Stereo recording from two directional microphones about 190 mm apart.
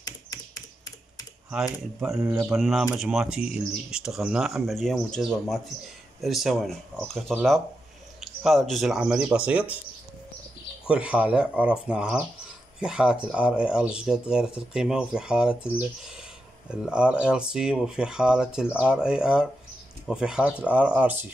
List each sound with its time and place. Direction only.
0.0 s typing: 20° left (ahead or behind)
2.0 s speech: 5° right (ahead or behind)
8.5 s speech: centre (ahead or behind)
10.9 s speech: 5° right (ahead or behind)